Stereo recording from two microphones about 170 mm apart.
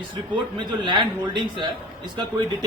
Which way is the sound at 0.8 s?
25° right (ahead or behind).